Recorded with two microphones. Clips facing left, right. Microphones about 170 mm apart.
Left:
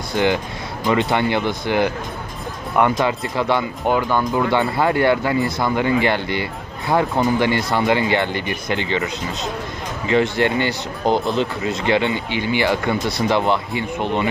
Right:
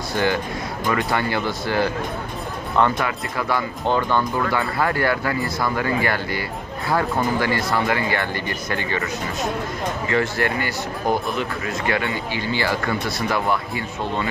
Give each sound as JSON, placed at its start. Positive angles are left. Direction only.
{"t": 0.1, "sound": "speech", "side_deg": 20}
{"t": 3.0, "sound": "speech", "side_deg": 25}
{"t": 3.9, "sound": "speech", "side_deg": 10}
{"t": 4.5, "sound": "speech", "side_deg": 25}